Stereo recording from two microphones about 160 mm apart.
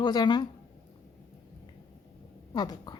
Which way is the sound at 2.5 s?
25° left (ahead or behind).